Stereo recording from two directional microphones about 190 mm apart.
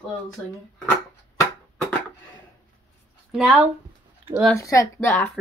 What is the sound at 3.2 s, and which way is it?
Speech, 5° right (ahead or behind).